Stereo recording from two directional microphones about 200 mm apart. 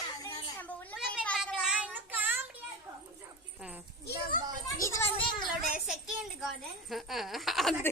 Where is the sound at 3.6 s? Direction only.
5° right (ahead or behind).